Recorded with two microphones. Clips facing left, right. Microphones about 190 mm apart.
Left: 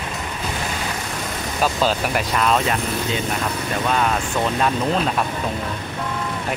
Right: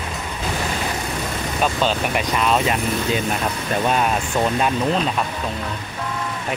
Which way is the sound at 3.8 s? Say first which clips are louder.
Right 1 dB; 20° right (ahead or behind).